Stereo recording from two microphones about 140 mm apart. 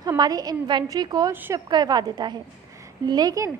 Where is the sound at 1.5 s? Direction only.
30° right (ahead or behind).